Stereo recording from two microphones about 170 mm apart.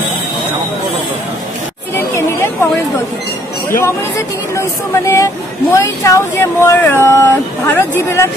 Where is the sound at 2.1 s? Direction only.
15° left (ahead or behind).